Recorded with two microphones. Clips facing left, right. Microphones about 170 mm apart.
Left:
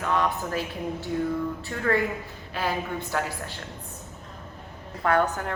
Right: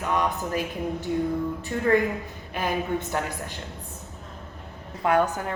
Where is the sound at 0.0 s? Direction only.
15° right (ahead or behind).